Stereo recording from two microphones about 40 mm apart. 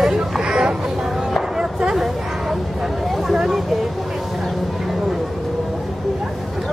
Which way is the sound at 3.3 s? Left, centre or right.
Centre.